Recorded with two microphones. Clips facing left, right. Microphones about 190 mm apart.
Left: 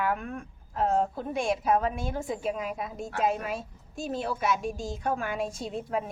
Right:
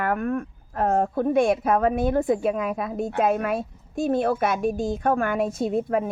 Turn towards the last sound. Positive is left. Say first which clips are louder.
# right 8 dB
turn(degrees=-55)  # may be behind; listen again after turning